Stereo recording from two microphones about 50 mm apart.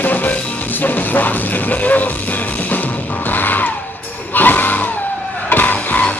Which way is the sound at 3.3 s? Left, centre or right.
Left.